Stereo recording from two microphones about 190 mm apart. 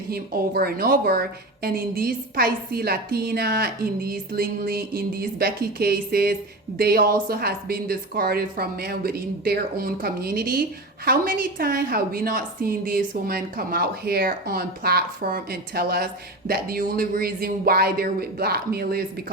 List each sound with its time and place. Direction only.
0.1 s speech: 50° right (ahead or behind)